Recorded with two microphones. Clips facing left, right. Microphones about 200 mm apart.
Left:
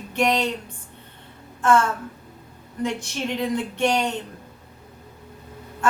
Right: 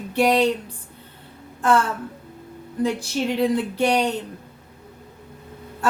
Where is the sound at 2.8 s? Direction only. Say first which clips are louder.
Right 4 dB; 35° right (ahead or behind).